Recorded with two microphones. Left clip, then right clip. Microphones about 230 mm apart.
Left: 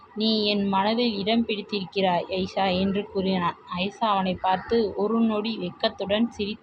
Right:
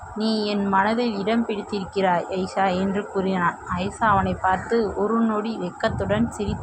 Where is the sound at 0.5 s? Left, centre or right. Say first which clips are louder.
Right 4 dB; centre.